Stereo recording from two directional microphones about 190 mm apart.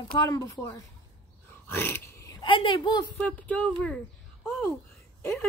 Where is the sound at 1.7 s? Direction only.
10° left (ahead or behind).